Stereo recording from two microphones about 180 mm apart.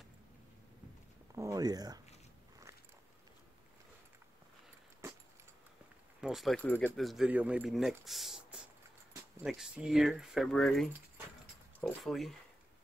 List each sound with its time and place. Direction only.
1.3 s speech: 15° right (ahead or behind)
5.0 s keys jangling: 15° right (ahead or behind)
6.2 s speech: centre (ahead or behind)
12.0 s speech: centre (ahead or behind)